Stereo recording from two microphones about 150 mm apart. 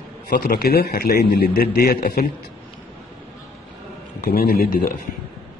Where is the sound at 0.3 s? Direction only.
80° left.